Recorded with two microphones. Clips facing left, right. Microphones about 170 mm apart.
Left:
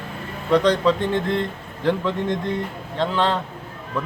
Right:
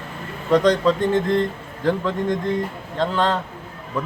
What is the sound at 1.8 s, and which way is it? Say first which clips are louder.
A man's voice: right 1 dB; 10° right (ahead or behind).